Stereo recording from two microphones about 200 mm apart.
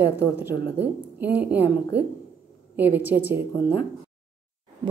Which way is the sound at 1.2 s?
10° right (ahead or behind).